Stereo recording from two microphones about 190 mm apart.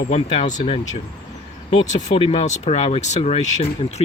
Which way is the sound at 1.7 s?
40° left (ahead or behind).